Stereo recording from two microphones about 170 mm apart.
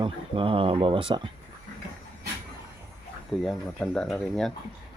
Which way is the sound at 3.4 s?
5° left (ahead or behind).